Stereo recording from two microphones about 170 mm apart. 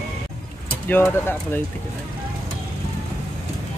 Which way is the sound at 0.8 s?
10° left (ahead or behind).